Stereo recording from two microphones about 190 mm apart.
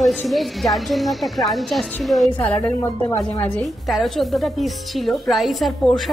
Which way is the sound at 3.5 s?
Centre (ahead or behind).